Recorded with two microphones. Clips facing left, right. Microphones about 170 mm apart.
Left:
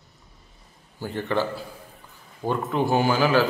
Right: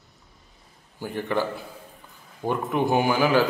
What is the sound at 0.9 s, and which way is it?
Speech, 15° right (ahead or behind).